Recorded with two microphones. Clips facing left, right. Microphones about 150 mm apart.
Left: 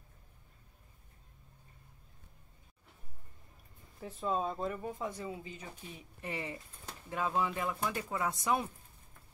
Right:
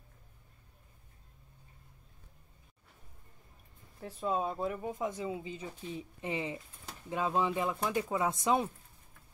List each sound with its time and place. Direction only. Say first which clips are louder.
4.0 s speech: right 1 dB; centre (ahead or behind)
4.8 s speech: right 3 dB; 20° right (ahead or behind)